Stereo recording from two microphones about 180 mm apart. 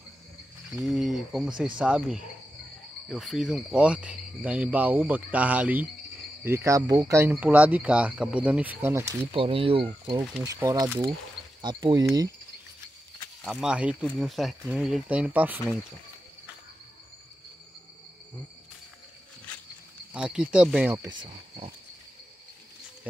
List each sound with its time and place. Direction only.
0.7 s speech: 5° right (ahead or behind)
9.3 s speech: 30° right (ahead or behind)
10.4 s speech: 20° right (ahead or behind)
13.4 s speech: 5° right (ahead or behind)
20.1 s speech: 5° right (ahead or behind); by 21.7 s 25° right (ahead or behind)